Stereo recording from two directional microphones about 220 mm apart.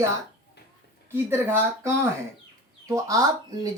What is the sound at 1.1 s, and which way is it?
Speech, 10° right (ahead or behind).